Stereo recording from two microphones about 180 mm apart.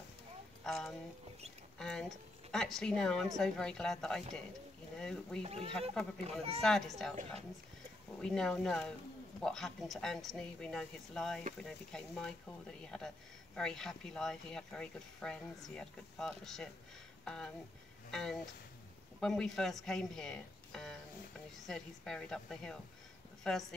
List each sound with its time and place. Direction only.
0.7 s speech: centre (ahead or behind)
5.4 s speech: 35° right (ahead or behind)
5.7 s speech: 5° left (ahead or behind)
8.2 s speech: 5° left (ahead or behind)